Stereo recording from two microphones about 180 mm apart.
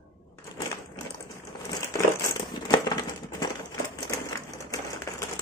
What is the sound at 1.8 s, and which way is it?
Crumpling, 20° left (ahead or behind).